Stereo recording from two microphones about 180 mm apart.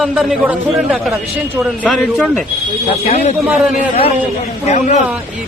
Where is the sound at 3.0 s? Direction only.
35° left (ahead or behind).